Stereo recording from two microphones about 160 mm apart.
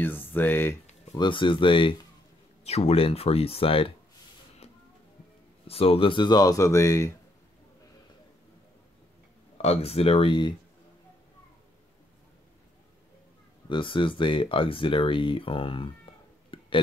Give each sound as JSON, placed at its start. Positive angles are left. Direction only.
{"t": 0.0, "sound": "speech", "side_deg": 10}
{"t": 1.1, "sound": "speech", "side_deg": 30}
{"t": 5.7, "sound": "speech", "side_deg": 35}
{"t": 9.6, "sound": "speech", "side_deg": 40}
{"t": 13.7, "sound": "speech", "side_deg": 30}
{"t": 16.5, "sound": "a sound", "side_deg": 35}